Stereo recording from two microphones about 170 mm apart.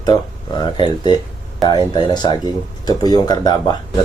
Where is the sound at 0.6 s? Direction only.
25° left (ahead or behind).